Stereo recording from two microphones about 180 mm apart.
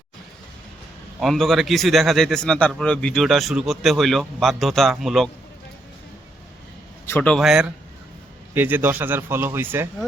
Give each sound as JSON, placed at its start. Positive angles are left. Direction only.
{"t": 1.2, "sound": "a man's voice", "side_deg": 0}
{"t": 7.1, "sound": "a man's voice", "side_deg": 5}